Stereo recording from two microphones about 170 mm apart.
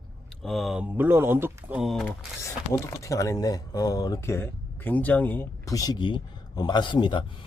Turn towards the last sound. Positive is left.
turn(degrees=30)  # may be behind; listen again after turning